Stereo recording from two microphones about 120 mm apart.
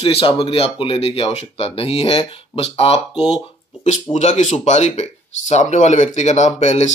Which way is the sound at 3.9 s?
75° left (ahead or behind).